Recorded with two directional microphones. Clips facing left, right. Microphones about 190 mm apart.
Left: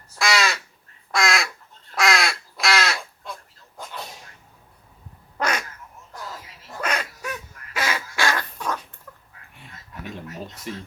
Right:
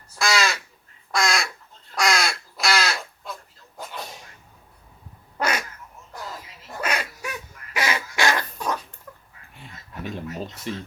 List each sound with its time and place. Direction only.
0.2 s crow: centre (ahead or behind)
5.4 s quack: 5° right (ahead or behind)
6.8 s bird: 10° right (ahead or behind)
10.7 s speech: 30° right (ahead or behind)